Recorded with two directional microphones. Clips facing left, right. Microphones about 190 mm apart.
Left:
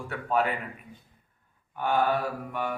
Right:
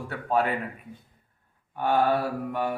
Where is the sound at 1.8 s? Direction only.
30° right (ahead or behind).